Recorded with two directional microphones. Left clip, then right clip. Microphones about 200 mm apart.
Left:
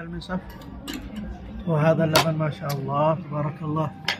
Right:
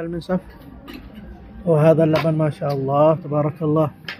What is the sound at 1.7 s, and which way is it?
Speech, 25° right (ahead or behind).